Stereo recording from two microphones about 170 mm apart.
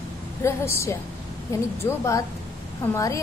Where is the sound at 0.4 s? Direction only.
15° left (ahead or behind).